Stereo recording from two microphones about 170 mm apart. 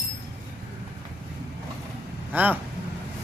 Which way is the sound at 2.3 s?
10° right (ahead or behind).